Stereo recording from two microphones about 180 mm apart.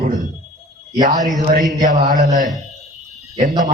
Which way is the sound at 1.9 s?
45° right (ahead or behind).